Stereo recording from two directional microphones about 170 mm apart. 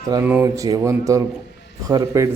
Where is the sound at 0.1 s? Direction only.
10° right (ahead or behind).